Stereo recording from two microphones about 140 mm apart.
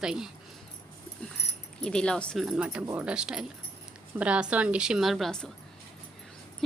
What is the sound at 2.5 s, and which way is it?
A woman's voice, 10° right (ahead or behind).